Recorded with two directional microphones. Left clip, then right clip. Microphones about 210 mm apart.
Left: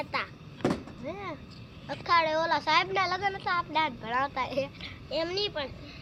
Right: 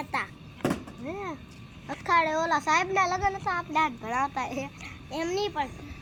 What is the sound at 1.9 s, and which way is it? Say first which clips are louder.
A child's voice: right 1 dB; 15° right (ahead or behind).